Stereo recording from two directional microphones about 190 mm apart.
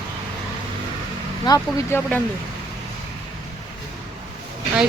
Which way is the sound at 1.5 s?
15° left (ahead or behind).